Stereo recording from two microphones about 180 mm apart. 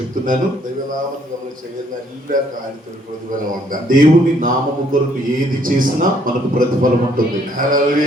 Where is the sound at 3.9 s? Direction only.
50° right (ahead or behind).